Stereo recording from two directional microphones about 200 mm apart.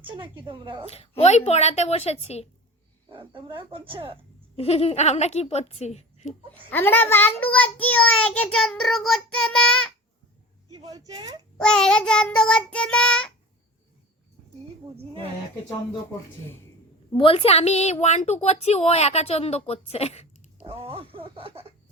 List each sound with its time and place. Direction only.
0.0 s speech: 25° right (ahead or behind)
1.2 s a woman's voice: 35° left (ahead or behind)
3.5 s speech: 25° right (ahead or behind)
4.5 s a woman's voice: 30° left (ahead or behind)
6.7 s a child's voice: 10° left (ahead or behind)
10.7 s speech: 20° right (ahead or behind)
11.6 s child singing: 5° left (ahead or behind)
17.2 s a woman's voice: 25° left (ahead or behind)
20.7 s speech: 30° right (ahead or behind)